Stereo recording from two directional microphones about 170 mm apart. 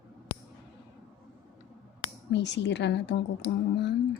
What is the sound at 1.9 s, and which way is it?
Speech, 75° left (ahead or behind).